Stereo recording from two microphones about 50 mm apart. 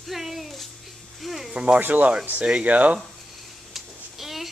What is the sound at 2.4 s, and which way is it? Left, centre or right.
Speech, right.